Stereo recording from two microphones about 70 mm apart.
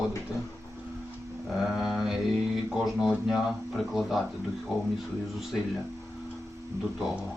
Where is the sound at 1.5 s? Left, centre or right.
Centre.